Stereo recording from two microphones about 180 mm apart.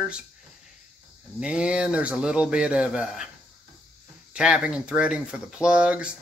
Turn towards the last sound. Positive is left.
turn(degrees=-5)  # may be behind; listen again after turning